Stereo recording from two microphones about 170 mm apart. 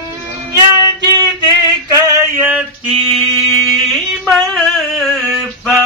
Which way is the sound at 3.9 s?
Centre (ahead or behind).